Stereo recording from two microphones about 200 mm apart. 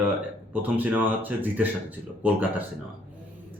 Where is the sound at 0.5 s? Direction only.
10° right (ahead or behind).